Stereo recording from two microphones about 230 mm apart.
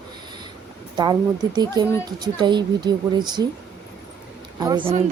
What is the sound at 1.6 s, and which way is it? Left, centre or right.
A woman's voice, centre.